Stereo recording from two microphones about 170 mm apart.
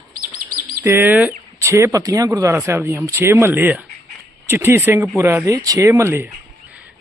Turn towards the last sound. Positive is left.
turn(degrees=-15)  # may be behind; listen again after turning